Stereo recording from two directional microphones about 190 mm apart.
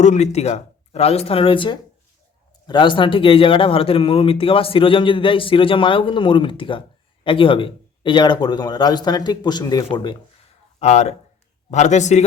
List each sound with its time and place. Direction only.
0.0 s speech: 35° left (ahead or behind)
10.8 s speech: 35° left (ahead or behind)